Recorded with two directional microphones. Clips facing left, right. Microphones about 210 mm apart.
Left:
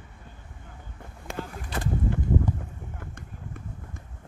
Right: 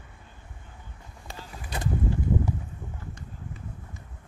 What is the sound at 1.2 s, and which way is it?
Vehicle, 55° left (ahead or behind).